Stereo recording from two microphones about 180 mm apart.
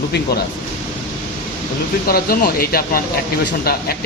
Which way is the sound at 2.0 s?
55° left (ahead or behind).